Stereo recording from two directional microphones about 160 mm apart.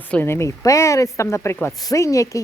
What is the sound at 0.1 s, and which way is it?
A woman's voice, 15° left (ahead or behind).